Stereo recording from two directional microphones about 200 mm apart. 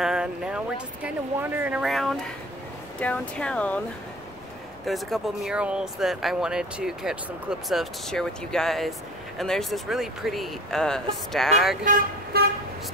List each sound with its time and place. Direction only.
0.0 s speech: 5° right (ahead or behind)
4.8 s speech: centre (ahead or behind)
11.8 s speech: 50° right (ahead or behind)